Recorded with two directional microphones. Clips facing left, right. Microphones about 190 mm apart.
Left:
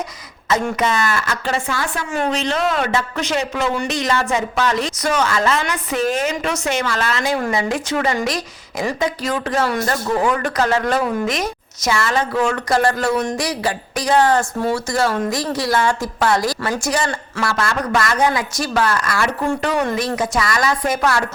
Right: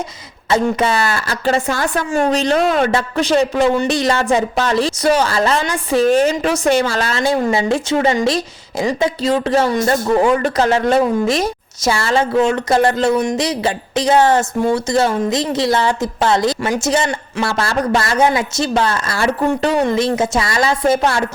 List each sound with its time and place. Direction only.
0.5 s speech: 30° right (ahead or behind)
17.6 s speech: 30° right (ahead or behind)